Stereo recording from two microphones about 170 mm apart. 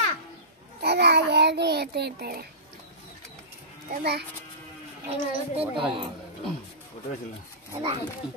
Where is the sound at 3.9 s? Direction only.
75° right (ahead or behind).